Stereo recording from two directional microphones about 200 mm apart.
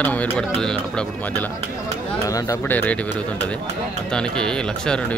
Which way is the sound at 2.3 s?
15° left (ahead or behind).